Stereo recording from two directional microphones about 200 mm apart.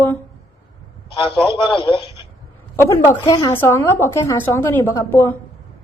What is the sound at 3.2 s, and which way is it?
A woman's voice, 15° left (ahead or behind).